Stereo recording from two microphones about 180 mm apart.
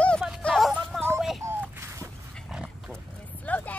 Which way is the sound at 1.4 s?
10° right (ahead or behind).